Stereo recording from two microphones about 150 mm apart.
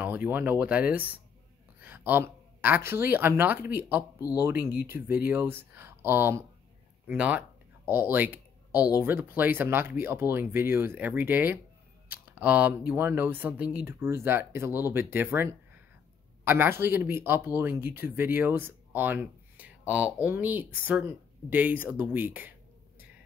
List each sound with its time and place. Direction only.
0.0 s speech: 10° right (ahead or behind)